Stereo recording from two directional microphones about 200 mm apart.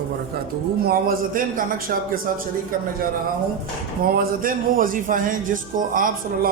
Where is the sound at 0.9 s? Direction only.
45° right (ahead or behind).